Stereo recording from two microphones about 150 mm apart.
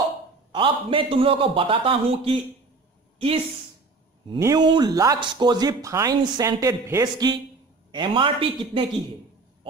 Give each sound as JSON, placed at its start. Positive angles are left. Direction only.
{"t": 0.5, "sound": "a man's voice", "side_deg": -35}
{"t": 4.4, "sound": "speech", "side_deg": -25}
{"t": 7.9, "sound": "a man's voice", "side_deg": -35}